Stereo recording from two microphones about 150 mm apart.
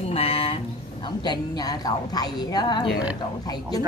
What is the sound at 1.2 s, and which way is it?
A woman's voice, 25° left (ahead or behind).